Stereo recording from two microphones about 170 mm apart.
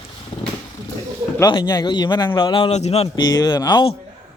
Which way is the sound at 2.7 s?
40° left (ahead or behind).